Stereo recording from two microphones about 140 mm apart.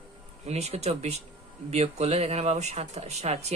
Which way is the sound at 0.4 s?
50° right (ahead or behind).